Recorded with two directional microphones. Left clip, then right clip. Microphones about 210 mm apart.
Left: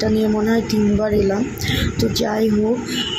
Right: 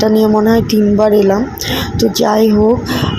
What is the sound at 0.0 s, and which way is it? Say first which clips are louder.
Speech: right 8 dB; 25° right (ahead or behind).